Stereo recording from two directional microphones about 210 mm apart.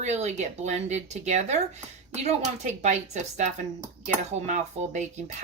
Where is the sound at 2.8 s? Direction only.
35° right (ahead or behind).